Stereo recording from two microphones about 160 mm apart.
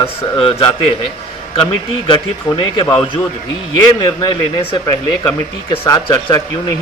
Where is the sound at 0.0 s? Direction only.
35° left (ahead or behind).